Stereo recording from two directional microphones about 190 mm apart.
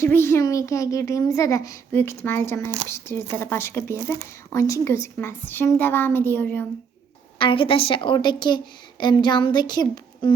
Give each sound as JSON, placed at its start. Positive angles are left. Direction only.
{"t": 0.0, "sound": "a child's voice", "side_deg": 15}
{"t": 7.3, "sound": "a woman's voice", "side_deg": 25}